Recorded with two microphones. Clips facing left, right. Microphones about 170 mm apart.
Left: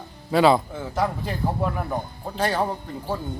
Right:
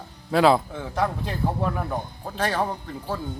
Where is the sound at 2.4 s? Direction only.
10° left (ahead or behind).